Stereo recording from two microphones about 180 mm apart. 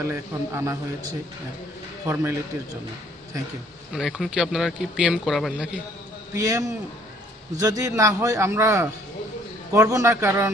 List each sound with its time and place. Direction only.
0.0 s a man's voice: 15° right (ahead or behind)
3.9 s speech: centre (ahead or behind)
6.3 s a man's voice: 20° right (ahead or behind)